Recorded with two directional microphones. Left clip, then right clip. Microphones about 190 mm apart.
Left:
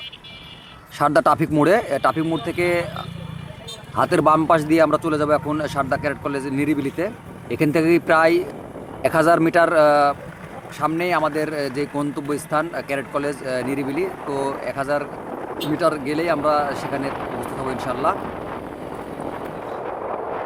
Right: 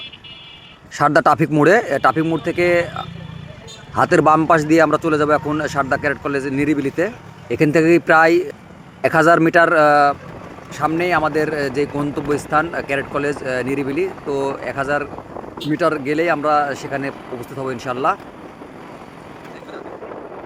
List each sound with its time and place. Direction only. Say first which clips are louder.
0.9 s a man's voice: right 3 dB; 20° right (ahead or behind)